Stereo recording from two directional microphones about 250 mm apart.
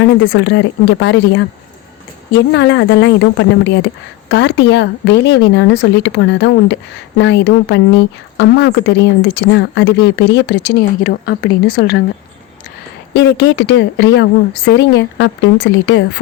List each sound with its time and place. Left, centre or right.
0.0 s speech: left
2.5 s speech: left
13.1 s speech: left